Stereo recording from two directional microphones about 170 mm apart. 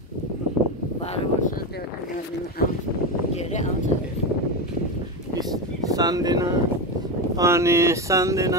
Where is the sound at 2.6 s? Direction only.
65° left (ahead or behind).